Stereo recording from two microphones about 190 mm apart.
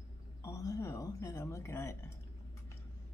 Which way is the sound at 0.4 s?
15° left (ahead or behind).